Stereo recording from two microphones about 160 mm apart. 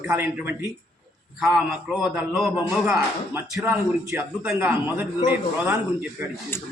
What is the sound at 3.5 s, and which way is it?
A man's voice, 10° right (ahead or behind).